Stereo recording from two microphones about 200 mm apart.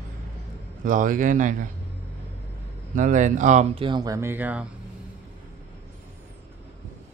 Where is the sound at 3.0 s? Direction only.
40° right (ahead or behind); by 4.6 s 10° right (ahead or behind).